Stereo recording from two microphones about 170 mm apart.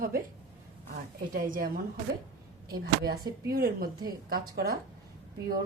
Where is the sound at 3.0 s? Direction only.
65° right (ahead or behind).